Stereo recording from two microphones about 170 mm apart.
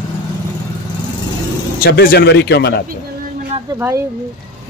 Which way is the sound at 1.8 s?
60° left (ahead or behind).